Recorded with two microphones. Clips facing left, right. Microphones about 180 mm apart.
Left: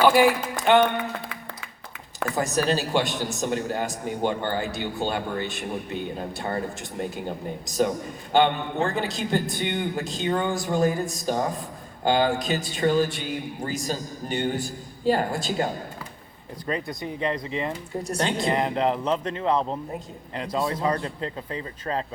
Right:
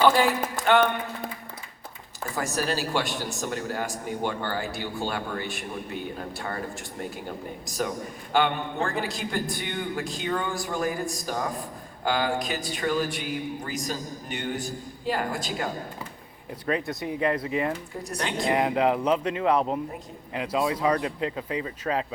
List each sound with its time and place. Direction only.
0.0 s speech: 10° left (ahead or behind)
2.3 s a man's voice: 20° left (ahead or behind)
7.6 s a man's voice: 20° left (ahead or behind)
16.6 s speech: 5° right (ahead or behind)
18.0 s a man's voice: 25° left (ahead or behind)
18.5 s speech: 10° right (ahead or behind)